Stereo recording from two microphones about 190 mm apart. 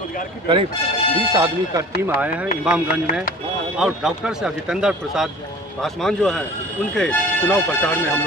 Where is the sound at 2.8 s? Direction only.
45° left (ahead or behind).